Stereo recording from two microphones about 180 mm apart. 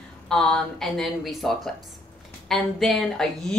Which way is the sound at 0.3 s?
5° left (ahead or behind).